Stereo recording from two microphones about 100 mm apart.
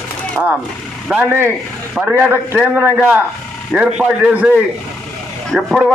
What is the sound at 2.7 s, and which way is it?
A man's voice, 20° right (ahead or behind).